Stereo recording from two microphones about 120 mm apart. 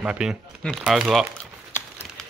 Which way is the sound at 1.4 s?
20° left (ahead or behind).